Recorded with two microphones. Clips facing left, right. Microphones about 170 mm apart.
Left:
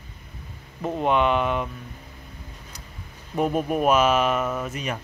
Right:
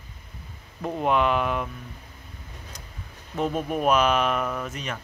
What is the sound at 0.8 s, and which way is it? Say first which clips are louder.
Speech: left 1 dB; centre (ahead or behind).